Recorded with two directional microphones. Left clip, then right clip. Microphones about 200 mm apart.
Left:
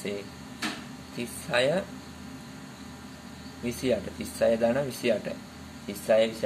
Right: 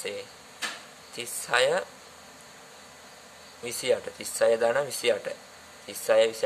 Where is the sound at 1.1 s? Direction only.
60° right (ahead or behind).